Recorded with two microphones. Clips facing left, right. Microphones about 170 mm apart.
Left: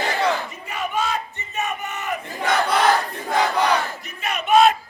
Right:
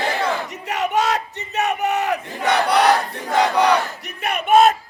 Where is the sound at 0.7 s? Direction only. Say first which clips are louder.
Right 5 dB; 75° right (ahead or behind); by 4.8 s 50° right (ahead or behind).